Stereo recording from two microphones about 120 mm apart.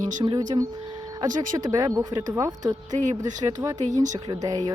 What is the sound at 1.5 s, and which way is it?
Speech, 30° right (ahead or behind).